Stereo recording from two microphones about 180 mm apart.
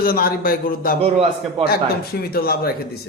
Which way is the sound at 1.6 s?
30° right (ahead or behind).